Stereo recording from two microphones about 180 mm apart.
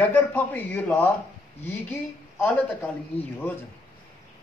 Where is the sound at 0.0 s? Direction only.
10° left (ahead or behind).